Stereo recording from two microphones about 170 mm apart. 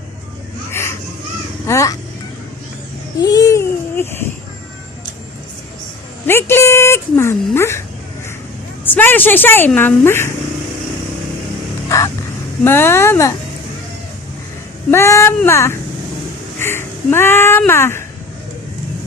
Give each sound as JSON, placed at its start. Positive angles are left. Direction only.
{"t": 0.7, "sound": "a sound", "side_deg": 15}
{"t": 1.6, "sound": "speech", "side_deg": 15}
{"t": 3.2, "sound": "babbling", "side_deg": 20}
{"t": 6.2, "sound": "a sound", "side_deg": 15}
{"t": 8.8, "sound": "speech", "side_deg": 10}
{"t": 11.9, "sound": "vehicle", "side_deg": 15}
{"t": 12.6, "sound": "speech", "side_deg": 15}
{"t": 14.8, "sound": "speech", "side_deg": 15}
{"t": 16.6, "sound": "a sound", "side_deg": 15}
{"t": 17.7, "sound": "speech", "side_deg": 15}